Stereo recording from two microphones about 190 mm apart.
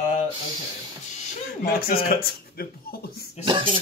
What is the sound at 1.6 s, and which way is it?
Speech, 50° left (ahead or behind).